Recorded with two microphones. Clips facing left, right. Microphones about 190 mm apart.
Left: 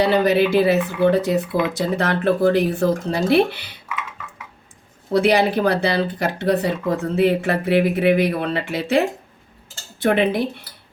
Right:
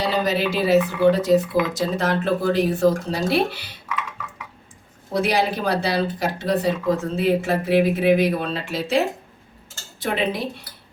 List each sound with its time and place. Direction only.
0.0 s speech: 60° left (ahead or behind)
5.1 s speech: 60° left (ahead or behind)
10.0 s speech: 55° left (ahead or behind)